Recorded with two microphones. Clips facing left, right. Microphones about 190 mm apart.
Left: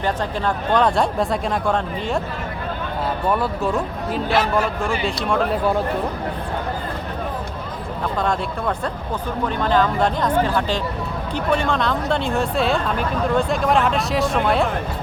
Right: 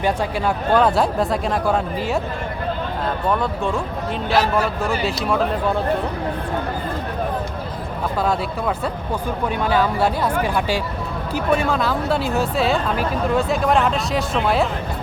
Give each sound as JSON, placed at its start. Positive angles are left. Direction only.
{"t": 0.0, "sound": "speech", "side_deg": -10}
{"t": 3.2, "sound": "speech", "side_deg": 5}
{"t": 8.2, "sound": "speech", "side_deg": -5}